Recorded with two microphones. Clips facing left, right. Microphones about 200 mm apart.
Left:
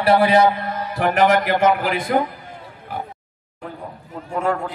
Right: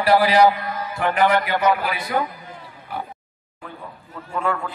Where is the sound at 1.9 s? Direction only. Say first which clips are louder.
Left 5 dB; 50° left (ahead or behind).